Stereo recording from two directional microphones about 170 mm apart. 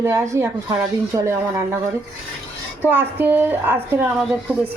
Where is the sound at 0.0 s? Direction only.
15° right (ahead or behind).